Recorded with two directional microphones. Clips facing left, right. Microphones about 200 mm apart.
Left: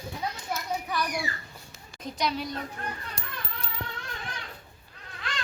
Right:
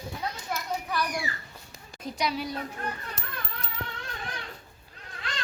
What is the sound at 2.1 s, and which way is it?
Speech, 5° right (ahead or behind).